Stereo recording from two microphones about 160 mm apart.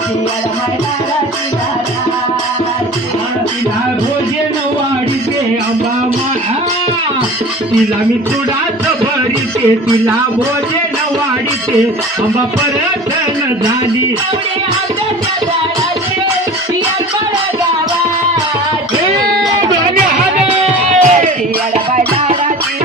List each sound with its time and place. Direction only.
20.9 s music: 45° right (ahead or behind)